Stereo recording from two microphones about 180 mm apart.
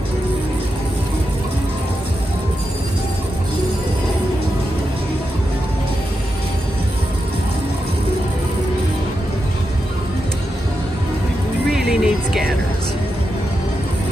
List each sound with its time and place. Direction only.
11.7 s music: centre (ahead or behind)